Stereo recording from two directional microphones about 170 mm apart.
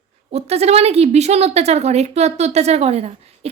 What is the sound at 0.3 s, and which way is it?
A woman's voice, 40° right (ahead or behind).